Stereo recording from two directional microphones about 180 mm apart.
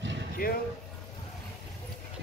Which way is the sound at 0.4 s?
55° left (ahead or behind).